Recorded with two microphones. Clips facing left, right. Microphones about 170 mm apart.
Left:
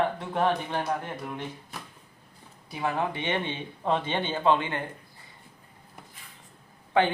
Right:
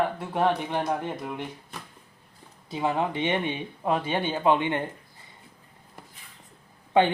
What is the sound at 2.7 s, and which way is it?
Speech, 20° right (ahead or behind).